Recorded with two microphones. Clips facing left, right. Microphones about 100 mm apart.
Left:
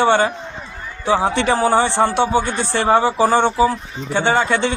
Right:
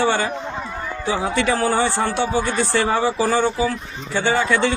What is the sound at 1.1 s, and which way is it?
A man's voice, 30° left (ahead or behind).